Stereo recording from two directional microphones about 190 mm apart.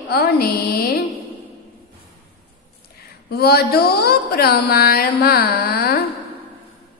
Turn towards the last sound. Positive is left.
turn(degrees=55)  # may be behind; listen again after turning